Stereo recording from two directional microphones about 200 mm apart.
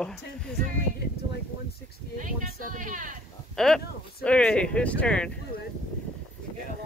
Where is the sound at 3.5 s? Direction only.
Centre (ahead or behind).